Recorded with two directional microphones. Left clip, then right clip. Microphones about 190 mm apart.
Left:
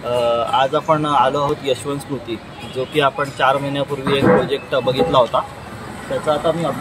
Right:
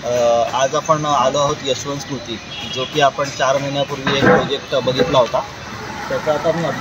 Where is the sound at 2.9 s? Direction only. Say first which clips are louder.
Right 2 dB; 5° left (ahead or behind).